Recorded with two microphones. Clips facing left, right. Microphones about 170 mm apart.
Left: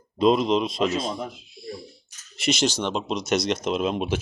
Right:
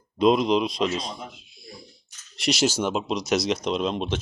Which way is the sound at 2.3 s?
Centre (ahead or behind).